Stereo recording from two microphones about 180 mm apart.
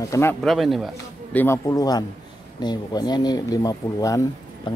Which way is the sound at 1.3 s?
10° left (ahead or behind).